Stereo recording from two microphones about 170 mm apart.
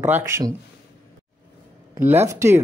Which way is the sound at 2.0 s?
15° right (ahead or behind).